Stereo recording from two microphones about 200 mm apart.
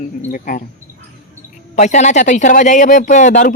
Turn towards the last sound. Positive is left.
turn(degrees=40)  # may be behind; listen again after turning